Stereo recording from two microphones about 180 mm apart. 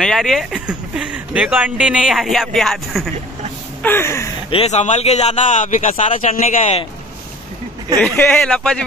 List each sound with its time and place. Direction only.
0.0 s speech: centre (ahead or behind)
3.8 s a sound: 15° left (ahead or behind)
4.5 s a man's voice: 35° left (ahead or behind)
8.0 s speech: 5° left (ahead or behind)